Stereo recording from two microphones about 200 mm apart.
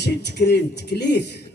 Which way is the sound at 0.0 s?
55° left (ahead or behind).